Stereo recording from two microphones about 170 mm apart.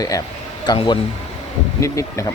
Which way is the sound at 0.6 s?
25° left (ahead or behind).